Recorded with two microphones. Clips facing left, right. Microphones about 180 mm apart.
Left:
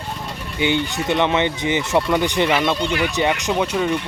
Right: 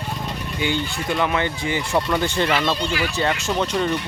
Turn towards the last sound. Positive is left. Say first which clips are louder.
# left 2 dB
turn(degrees=10)  # may be behind; listen again after turning